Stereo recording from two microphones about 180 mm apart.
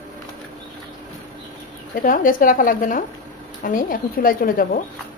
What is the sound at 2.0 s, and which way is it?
A woman's voice, 50° left (ahead or behind).